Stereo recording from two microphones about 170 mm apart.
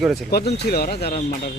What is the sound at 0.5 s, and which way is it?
Speech, 70° left (ahead or behind).